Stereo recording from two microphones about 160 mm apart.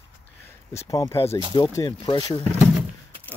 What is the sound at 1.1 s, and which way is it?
Speech, 35° left (ahead or behind).